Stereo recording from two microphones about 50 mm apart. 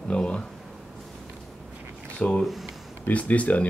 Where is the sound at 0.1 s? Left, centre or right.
Centre.